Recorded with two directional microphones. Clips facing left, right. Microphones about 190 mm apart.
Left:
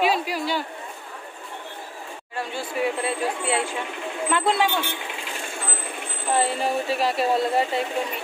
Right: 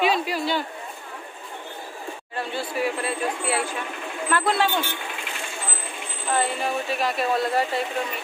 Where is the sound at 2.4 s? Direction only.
20° left (ahead or behind).